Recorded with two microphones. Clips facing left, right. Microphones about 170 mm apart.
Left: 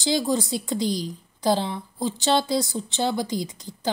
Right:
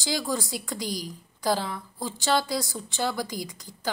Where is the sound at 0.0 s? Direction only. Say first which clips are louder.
Left 6 dB; 25° left (ahead or behind).